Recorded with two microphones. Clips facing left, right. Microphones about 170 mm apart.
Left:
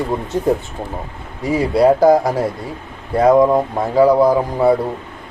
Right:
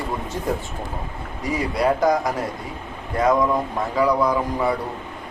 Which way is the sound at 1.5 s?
30° left (ahead or behind).